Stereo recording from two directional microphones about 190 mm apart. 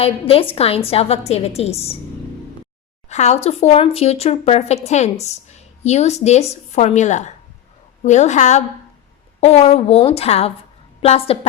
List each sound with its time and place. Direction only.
0.0 s speech: 30° left (ahead or behind)
3.1 s a woman's voice: 35° left (ahead or behind)